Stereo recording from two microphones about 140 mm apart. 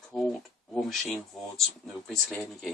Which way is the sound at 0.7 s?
Centre (ahead or behind).